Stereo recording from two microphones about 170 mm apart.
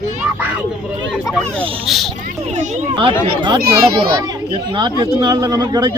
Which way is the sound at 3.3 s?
30° right (ahead or behind).